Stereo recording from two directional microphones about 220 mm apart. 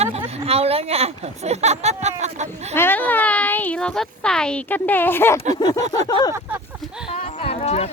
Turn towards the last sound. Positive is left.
turn(degrees=25)  # may be behind; listen again after turning